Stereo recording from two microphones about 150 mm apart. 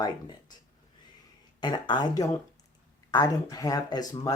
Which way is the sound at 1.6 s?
30° left (ahead or behind).